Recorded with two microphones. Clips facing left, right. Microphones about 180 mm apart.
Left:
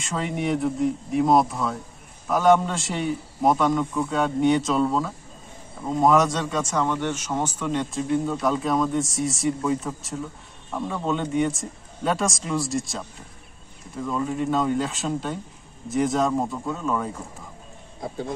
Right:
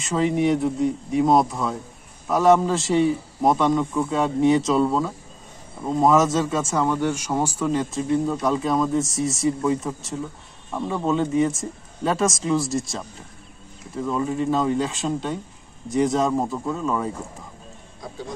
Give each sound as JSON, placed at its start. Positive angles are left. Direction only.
{"t": 0.0, "sound": "a man's voice", "side_deg": 0}
{"t": 14.0, "sound": "a man's voice", "side_deg": -5}